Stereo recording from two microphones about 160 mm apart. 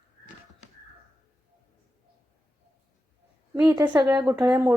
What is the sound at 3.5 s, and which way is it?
A woman's voice, 25° right (ahead or behind).